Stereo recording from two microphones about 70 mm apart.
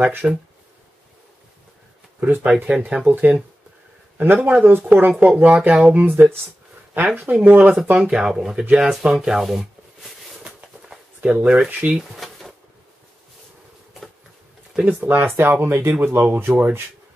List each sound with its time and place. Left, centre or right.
0.0 s speech: right
2.1 s speech: right
8.0 s speech: centre
8.9 s a sound: centre
11.1 s speech: right
11.4 s speech: centre
12.0 s bee: centre
14.9 s speech: right